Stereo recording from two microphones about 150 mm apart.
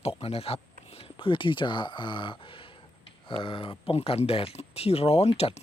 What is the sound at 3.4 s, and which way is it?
Speech, 35° left (ahead or behind).